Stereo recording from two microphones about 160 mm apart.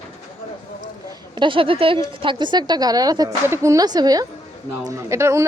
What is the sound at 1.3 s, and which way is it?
A woman's voice, 30° right (ahead or behind).